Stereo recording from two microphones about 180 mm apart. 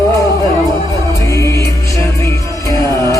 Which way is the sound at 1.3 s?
15° left (ahead or behind).